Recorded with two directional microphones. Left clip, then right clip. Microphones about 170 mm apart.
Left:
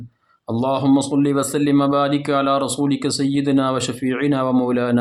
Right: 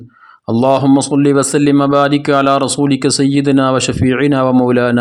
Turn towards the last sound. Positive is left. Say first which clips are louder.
# right 7 dB
turn(degrees=-40)  # may be behind; listen again after turning